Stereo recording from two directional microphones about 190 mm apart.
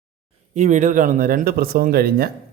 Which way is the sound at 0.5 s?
40° right (ahead or behind).